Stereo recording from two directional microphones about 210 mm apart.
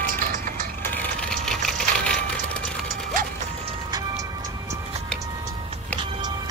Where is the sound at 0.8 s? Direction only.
5° left (ahead or behind).